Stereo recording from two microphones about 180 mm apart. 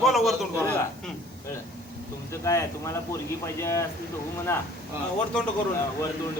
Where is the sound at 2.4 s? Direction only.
20° left (ahead or behind).